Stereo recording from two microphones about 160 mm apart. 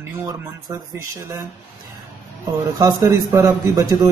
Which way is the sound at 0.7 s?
20° right (ahead or behind).